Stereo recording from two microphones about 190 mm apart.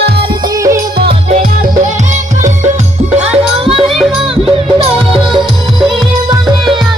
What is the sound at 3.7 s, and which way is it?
Music, 30° right (ahead or behind).